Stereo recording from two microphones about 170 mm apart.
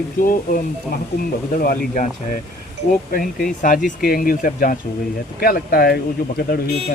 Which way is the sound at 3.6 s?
55° left (ahead or behind).